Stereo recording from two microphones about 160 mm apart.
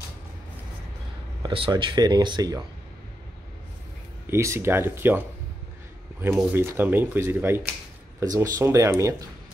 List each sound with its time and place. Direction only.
1.4 s speech: 30° right (ahead or behind)
4.3 s speech: 15° right (ahead or behind)
6.2 s speech: 15° right (ahead or behind)